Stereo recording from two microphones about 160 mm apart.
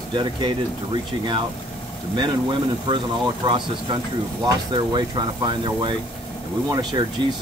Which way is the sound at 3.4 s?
30° right (ahead or behind).